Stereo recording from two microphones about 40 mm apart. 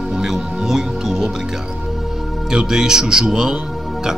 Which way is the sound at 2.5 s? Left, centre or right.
Centre.